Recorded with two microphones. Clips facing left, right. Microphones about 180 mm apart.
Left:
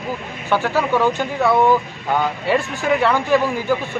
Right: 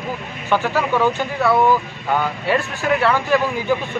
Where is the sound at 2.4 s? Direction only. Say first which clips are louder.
Left 1 dB; 15° left (ahead or behind).